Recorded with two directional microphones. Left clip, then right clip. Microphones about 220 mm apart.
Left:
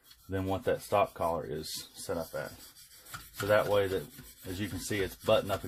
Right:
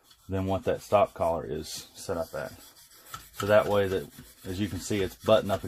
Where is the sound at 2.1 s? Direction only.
30° right (ahead or behind).